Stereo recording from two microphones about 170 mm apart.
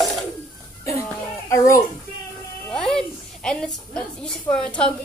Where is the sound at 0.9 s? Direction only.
15° left (ahead or behind).